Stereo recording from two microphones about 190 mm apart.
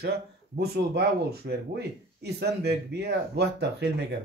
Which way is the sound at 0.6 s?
60° right (ahead or behind).